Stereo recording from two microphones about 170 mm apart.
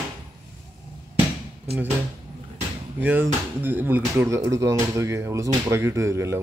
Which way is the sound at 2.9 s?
10° right (ahead or behind).